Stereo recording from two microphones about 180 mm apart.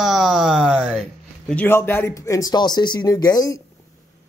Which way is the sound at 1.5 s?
10° left (ahead or behind).